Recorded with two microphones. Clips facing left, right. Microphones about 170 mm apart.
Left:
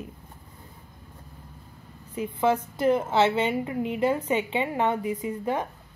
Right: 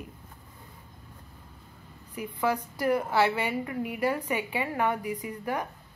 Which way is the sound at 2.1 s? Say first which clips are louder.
Left 5 dB; 25° left (ahead or behind).